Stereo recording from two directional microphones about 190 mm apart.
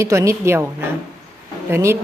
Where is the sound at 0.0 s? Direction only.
15° right (ahead or behind).